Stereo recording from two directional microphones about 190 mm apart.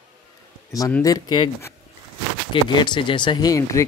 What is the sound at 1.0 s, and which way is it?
A man's voice, 20° left (ahead or behind).